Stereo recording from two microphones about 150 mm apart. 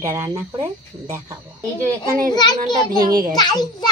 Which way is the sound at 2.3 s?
25° left (ahead or behind).